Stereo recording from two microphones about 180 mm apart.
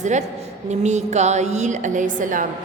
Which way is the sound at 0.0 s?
40° right (ahead or behind).